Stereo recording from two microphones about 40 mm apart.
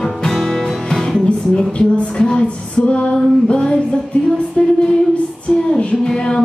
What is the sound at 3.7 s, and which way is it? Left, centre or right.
Music, left.